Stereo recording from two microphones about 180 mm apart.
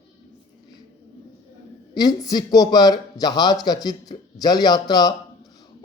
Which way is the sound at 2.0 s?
20° left (ahead or behind).